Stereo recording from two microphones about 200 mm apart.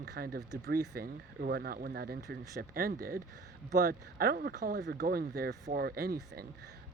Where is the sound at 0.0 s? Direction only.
55° right (ahead or behind).